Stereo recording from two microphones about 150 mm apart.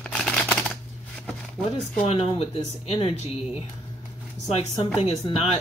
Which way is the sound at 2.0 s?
40° left (ahead or behind).